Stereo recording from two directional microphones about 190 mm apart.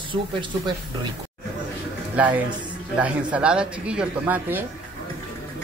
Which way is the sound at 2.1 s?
10° right (ahead or behind).